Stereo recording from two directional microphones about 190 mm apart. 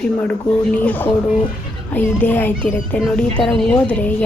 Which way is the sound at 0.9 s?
10° left (ahead or behind).